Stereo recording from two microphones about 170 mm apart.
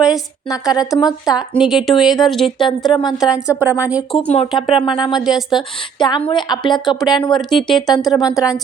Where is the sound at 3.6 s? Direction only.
10° right (ahead or behind).